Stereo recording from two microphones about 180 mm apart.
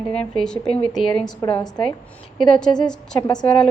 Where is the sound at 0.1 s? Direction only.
5° left (ahead or behind).